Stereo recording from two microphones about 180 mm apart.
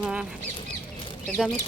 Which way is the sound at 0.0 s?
5° right (ahead or behind).